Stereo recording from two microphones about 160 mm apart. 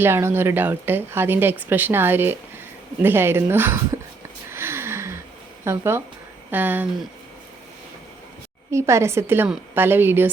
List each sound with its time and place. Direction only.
0.0 s speech: 15° right (ahead or behind)
4.5 s gasp: 15° right (ahead or behind)
5.6 s speech: 15° right (ahead or behind)
8.7 s speech: 20° right (ahead or behind)